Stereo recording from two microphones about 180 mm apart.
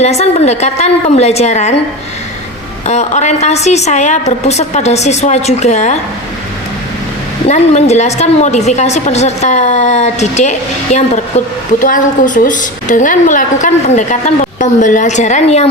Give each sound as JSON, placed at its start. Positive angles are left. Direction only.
{"t": 0.0, "sound": "a woman's voice", "side_deg": 35}
{"t": 2.8, "sound": "a woman's voice", "side_deg": 40}
{"t": 7.4, "sound": "a woman's voice", "side_deg": 40}